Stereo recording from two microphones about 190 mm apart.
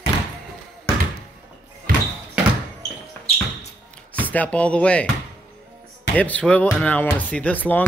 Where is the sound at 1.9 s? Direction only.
50° right (ahead or behind).